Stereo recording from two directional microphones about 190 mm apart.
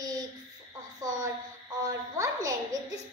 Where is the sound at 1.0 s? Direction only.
20° right (ahead or behind).